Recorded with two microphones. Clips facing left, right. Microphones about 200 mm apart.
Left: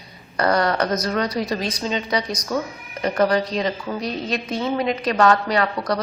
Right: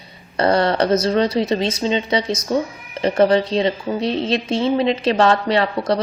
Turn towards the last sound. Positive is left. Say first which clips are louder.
# right 3 dB
turn(degrees=-25)  # may be behind; listen again after turning